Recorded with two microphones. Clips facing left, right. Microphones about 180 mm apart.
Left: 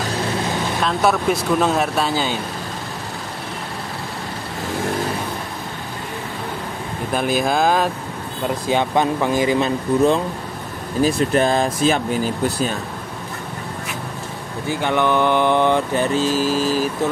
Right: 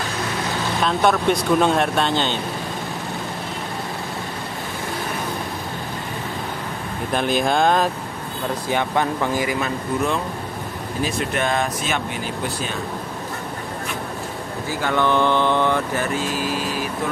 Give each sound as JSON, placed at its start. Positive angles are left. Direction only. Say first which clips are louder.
{"t": 0.8, "sound": "speech", "louder": "even", "side_deg": 0}
{"t": 7.1, "sound": "speech", "louder": "left 1 dB", "side_deg": 5}
{"t": 8.6, "sound": "speech", "louder": "left 3 dB", "side_deg": 20}
{"t": 14.7, "sound": "speech", "louder": "left 2 dB", "side_deg": 20}